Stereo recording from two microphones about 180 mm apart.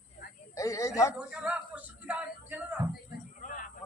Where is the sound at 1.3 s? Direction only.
5° right (ahead or behind).